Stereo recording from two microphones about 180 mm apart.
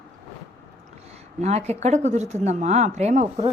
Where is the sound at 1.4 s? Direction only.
35° right (ahead or behind).